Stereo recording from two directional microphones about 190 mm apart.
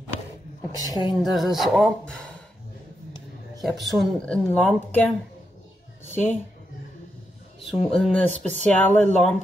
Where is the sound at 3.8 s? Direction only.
5° left (ahead or behind).